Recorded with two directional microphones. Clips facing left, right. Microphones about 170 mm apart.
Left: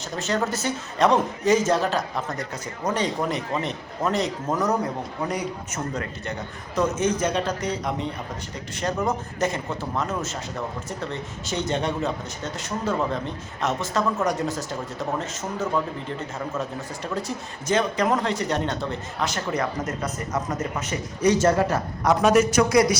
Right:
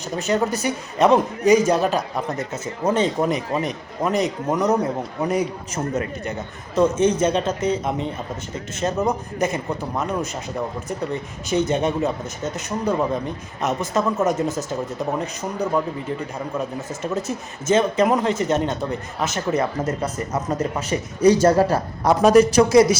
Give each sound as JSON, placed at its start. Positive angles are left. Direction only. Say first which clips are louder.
{"t": 0.2, "sound": "a man's voice", "louder": "right 4 dB", "side_deg": -15}